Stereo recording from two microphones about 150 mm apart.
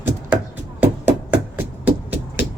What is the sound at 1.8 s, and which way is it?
Music, 10° right (ahead or behind).